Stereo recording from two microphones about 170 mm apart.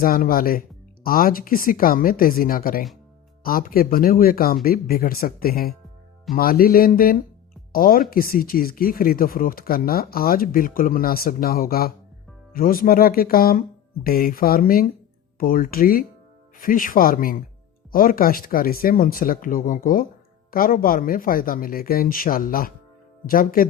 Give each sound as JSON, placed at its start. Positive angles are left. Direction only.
{"t": 0.0, "sound": "speech", "side_deg": 60}